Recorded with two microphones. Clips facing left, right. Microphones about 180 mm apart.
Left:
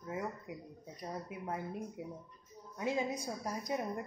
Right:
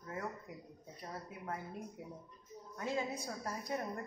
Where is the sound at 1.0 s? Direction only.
20° left (ahead or behind).